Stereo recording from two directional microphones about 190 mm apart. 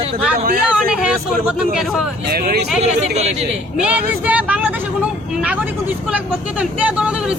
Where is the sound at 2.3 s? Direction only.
55° right (ahead or behind).